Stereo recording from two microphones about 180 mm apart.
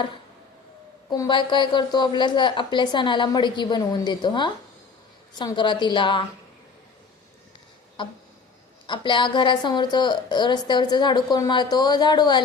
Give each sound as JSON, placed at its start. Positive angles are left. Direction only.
{"t": 1.1, "sound": "a woman's voice", "side_deg": 25}
{"t": 8.0, "sound": "a woman's voice", "side_deg": 25}